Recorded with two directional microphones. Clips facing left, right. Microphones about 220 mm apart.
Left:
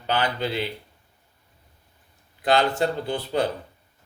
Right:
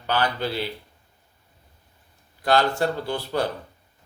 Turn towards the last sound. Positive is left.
turn(degrees=20)  # may be behind; listen again after turning